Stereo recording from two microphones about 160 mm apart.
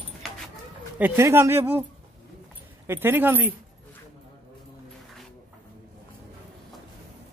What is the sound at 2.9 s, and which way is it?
Speech, 15° right (ahead or behind).